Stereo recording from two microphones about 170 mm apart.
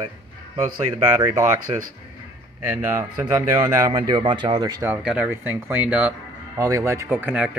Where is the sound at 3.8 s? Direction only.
30° right (ahead or behind).